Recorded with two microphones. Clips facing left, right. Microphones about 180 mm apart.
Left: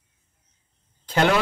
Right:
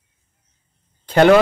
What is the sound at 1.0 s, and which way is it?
Speech, 55° right (ahead or behind).